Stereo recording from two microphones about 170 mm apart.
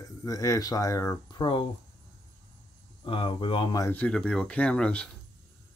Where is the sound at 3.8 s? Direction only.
10° left (ahead or behind).